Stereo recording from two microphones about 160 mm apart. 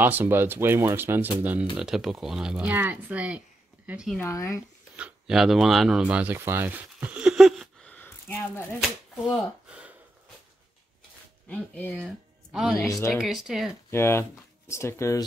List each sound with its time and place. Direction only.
0.0 s speech: 10° right (ahead or behind)
4.2 s speech: 20° left (ahead or behind)
4.9 s speech: 5° right (ahead or behind); by 8.6 s 10° left (ahead or behind)
9.7 s a sound: 5° right (ahead or behind)
11.4 s speech: 10° left (ahead or behind)
12.5 s speech: centre (ahead or behind)
13.8 s speech: 15° left (ahead or behind)